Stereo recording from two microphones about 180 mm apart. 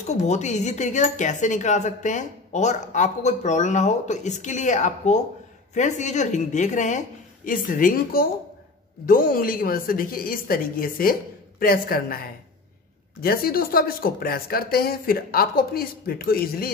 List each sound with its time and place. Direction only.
0.0 s a woman's voice: 40° left (ahead or behind); by 16.7 s 55° left (ahead or behind)